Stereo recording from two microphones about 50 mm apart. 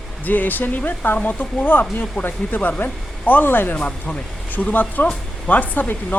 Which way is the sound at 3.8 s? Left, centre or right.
Left.